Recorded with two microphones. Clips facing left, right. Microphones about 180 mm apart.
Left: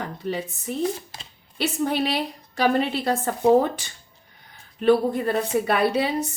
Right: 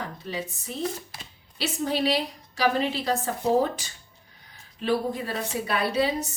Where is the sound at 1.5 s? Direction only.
55° left (ahead or behind).